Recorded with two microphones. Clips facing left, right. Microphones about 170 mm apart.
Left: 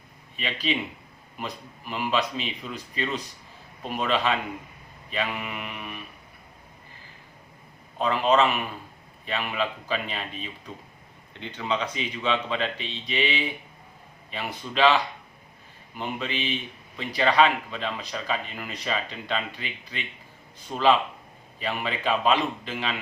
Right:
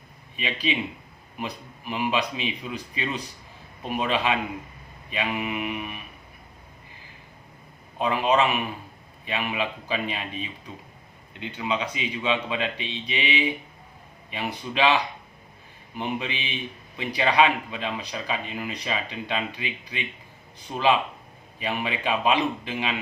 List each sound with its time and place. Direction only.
0.3 s speech: 15° right (ahead or behind)
7.9 s speech: 15° right (ahead or behind)